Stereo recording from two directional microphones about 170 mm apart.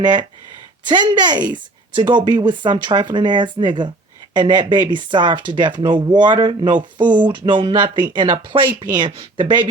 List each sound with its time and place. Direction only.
0.0 s speech: 25° right (ahead or behind)
7.0 s speech: 10° right (ahead or behind)
7.3 s speech: 30° right (ahead or behind)